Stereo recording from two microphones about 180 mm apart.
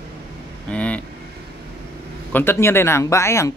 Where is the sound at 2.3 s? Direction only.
10° left (ahead or behind).